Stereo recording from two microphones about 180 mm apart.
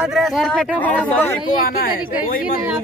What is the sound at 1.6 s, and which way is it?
Speech, 55° left (ahead or behind).